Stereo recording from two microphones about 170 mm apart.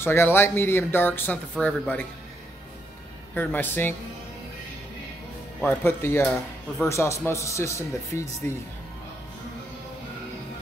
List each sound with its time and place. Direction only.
0.0 s speech: 15° left (ahead or behind)
3.3 s speech: 10° left (ahead or behind)
5.6 s speech: 10° left (ahead or behind)